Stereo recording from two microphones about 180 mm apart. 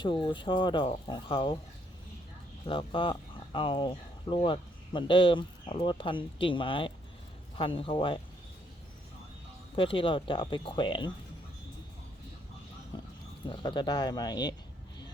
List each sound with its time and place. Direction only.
0.0 s speech: 25° left (ahead or behind)
2.6 s speech: 30° left (ahead or behind)
9.7 s speech: 30° left (ahead or behind)
12.9 s a sound: 25° left (ahead or behind)
13.5 s speech: 25° left (ahead or behind)